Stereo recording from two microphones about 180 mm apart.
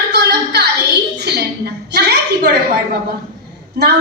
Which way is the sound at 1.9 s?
65° right (ahead or behind).